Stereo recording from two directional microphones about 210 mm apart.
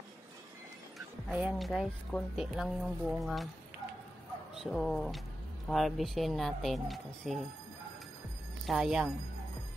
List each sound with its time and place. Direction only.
0.9 s speech: 5° right (ahead or behind)
4.6 s speech: centre (ahead or behind)
8.6 s speech: centre (ahead or behind)